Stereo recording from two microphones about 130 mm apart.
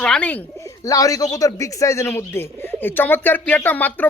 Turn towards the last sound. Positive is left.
turn(degrees=15)  # may be behind; listen again after turning